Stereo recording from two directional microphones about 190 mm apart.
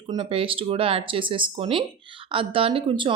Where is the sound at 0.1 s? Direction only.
30° right (ahead or behind).